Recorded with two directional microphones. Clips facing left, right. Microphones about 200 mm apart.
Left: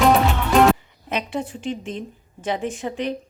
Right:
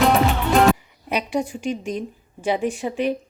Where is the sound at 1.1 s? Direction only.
10° right (ahead or behind).